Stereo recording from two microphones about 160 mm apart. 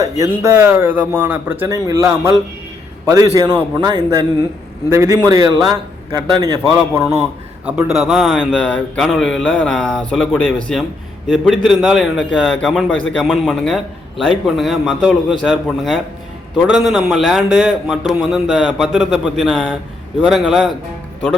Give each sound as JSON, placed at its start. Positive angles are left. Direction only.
{"t": 0.0, "sound": "a man's voice", "side_deg": -20}
{"t": 7.6, "sound": "a man's voice", "side_deg": -5}
{"t": 8.5, "sound": "a man's voice", "side_deg": 10}